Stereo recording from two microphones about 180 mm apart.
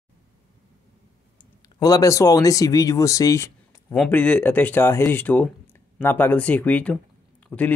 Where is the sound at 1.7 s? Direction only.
20° left (ahead or behind).